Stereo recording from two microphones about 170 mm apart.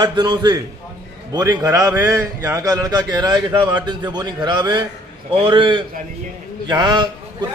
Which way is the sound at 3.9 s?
25° right (ahead or behind).